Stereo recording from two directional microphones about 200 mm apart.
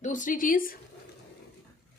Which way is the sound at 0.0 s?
40° left (ahead or behind).